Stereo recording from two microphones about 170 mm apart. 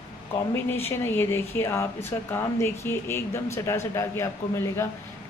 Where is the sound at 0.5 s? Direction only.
15° left (ahead or behind).